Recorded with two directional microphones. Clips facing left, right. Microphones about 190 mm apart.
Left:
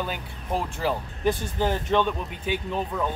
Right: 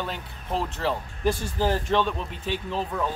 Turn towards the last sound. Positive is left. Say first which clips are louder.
# even
turn(degrees=0)  # may be behind; listen again after turning